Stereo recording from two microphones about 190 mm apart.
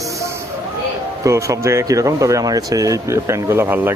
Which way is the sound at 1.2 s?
15° right (ahead or behind).